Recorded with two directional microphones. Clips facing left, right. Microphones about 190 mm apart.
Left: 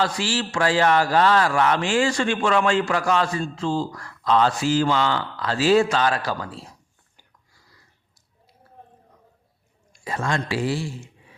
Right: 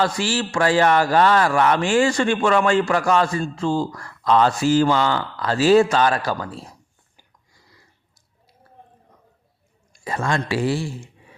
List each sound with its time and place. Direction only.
0.0 s speech: 50° right (ahead or behind)
9.9 s speech: 45° right (ahead or behind)